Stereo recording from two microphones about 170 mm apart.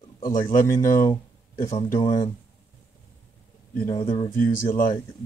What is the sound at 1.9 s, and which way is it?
Speech, 25° left (ahead or behind).